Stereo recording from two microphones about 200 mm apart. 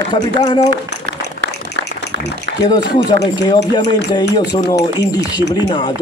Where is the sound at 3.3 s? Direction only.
20° left (ahead or behind).